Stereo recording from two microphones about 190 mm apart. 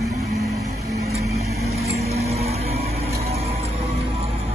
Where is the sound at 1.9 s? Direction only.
35° right (ahead or behind).